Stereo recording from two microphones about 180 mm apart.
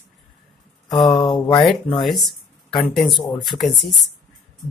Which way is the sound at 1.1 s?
25° left (ahead or behind).